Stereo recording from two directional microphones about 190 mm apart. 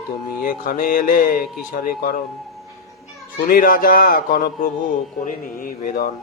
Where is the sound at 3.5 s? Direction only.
50° left (ahead or behind).